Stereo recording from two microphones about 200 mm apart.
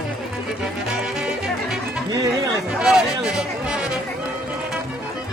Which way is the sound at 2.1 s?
20° right (ahead or behind).